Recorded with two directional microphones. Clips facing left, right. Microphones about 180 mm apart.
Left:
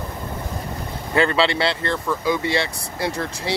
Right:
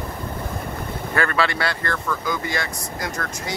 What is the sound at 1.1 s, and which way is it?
Speech, 20° left (ahead or behind).